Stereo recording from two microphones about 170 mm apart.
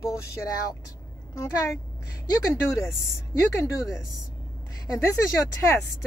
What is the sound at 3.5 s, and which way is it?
Speech, 15° left (ahead or behind).